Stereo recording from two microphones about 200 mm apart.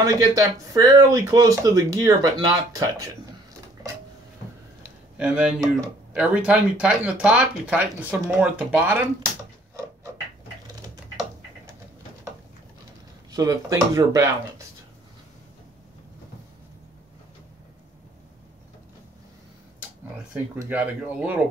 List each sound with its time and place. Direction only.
0.0 s speech: 15° right (ahead or behind)
4.8 s a sound: 5° right (ahead or behind)
6.1 s speech: 5° right (ahead or behind)
13.3 s speech: 20° right (ahead or behind)
20.6 s speech: 10° right (ahead or behind)